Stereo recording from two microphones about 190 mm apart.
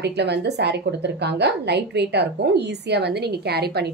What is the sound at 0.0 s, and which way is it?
A woman's voice, 60° right (ahead or behind).